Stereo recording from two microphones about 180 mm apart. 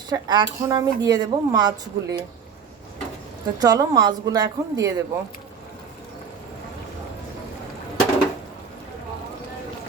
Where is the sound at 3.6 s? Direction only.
20° right (ahead or behind).